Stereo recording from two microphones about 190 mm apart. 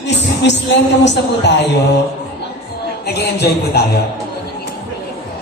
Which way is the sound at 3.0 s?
60° left (ahead or behind).